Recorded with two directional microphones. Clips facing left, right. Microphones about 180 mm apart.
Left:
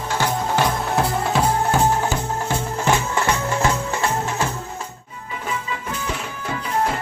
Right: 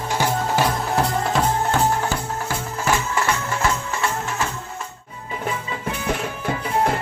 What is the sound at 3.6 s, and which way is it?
Music, 30° left (ahead or behind).